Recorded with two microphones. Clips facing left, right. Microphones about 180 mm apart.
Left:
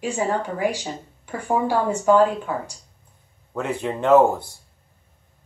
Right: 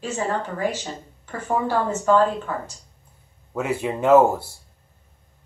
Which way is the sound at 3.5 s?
5° right (ahead or behind).